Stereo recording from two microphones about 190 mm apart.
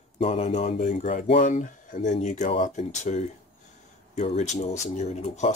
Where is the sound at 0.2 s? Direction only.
30° left (ahead or behind).